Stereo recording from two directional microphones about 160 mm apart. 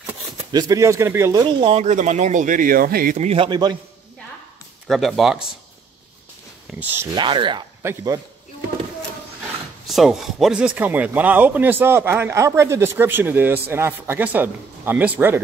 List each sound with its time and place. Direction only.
0.5 s speech: 25° right (ahead or behind); by 3.2 s 65° right (ahead or behind)
3.2 s speech: 40° right (ahead or behind)
3.4 s a man's voice: 25° right (ahead or behind)
4.8 s speech: centre (ahead or behind)
6.7 s speech: 10° right (ahead or behind)
7.2 s speech: 30° right (ahead or behind)
7.8 s a man's voice: 20° right (ahead or behind)
9.8 s speech: centre (ahead or behind)